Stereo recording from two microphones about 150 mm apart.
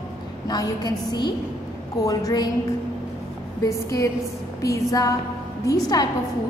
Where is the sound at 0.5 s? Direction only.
25° left (ahead or behind).